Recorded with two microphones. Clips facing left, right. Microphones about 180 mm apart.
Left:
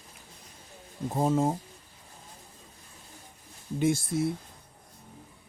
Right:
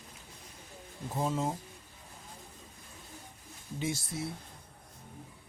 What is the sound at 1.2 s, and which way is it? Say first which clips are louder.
Speech: left 7 dB; 45° left (ahead or behind).